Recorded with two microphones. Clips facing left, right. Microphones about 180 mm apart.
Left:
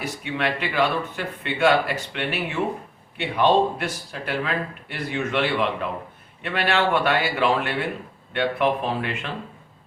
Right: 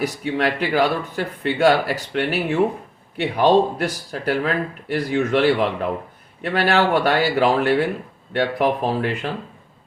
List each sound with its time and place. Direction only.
0.0 s speech: 40° right (ahead or behind)